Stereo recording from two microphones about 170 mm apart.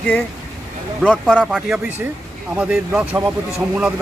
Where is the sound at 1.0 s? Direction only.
5° left (ahead or behind).